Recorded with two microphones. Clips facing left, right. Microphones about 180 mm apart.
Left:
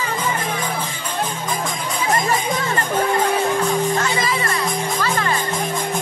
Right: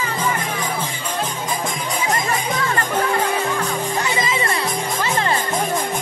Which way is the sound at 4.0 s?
20° right (ahead or behind).